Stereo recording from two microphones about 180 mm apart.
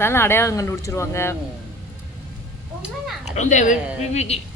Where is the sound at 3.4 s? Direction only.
40° left (ahead or behind).